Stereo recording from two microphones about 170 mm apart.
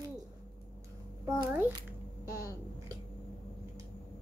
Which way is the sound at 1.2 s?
15° right (ahead or behind).